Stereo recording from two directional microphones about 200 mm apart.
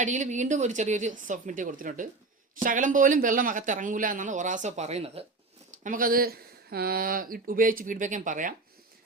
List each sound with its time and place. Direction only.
0.0 s speech: 35° right (ahead or behind)
5.8 s speech: 45° right (ahead or behind)